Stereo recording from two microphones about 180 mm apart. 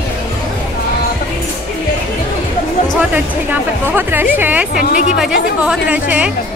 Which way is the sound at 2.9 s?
10° right (ahead or behind).